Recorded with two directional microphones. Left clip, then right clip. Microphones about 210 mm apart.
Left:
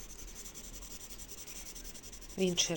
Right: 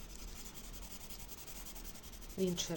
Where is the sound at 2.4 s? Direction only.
10° left (ahead or behind).